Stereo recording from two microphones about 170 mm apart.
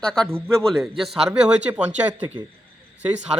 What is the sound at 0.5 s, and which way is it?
Speech, centre (ahead or behind).